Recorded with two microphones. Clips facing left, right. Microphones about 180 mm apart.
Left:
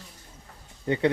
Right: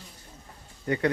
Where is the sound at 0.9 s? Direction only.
25° left (ahead or behind).